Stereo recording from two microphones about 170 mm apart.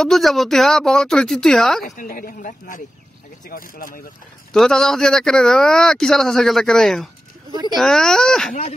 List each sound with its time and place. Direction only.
0.0 s speech: centre (ahead or behind)
1.9 s speech: 55° left (ahead or behind)
4.5 s speech: 5° left (ahead or behind)